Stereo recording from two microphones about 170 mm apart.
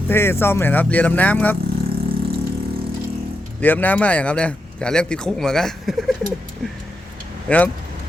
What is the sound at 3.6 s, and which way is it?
A man's voice, 10° left (ahead or behind).